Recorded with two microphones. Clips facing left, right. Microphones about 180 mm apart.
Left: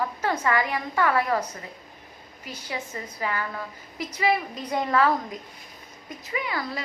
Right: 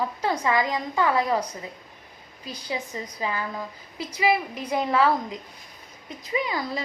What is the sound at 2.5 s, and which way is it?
A woman's voice, 15° right (ahead or behind).